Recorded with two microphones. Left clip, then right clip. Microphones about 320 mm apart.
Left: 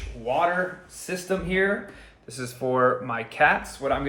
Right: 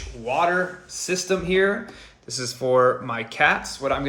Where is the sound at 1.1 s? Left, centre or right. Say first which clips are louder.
Right 4 dB; right.